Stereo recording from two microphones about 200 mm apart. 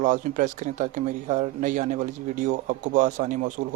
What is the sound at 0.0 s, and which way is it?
Speech, 40° right (ahead or behind).